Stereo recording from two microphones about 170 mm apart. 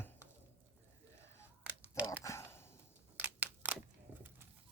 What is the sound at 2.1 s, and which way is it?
Speech, 15° left (ahead or behind).